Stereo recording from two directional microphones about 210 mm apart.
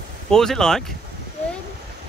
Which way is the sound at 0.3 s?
Centre (ahead or behind).